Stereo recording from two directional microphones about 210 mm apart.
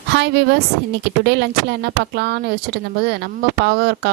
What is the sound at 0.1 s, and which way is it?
A woman's voice, 55° right (ahead or behind).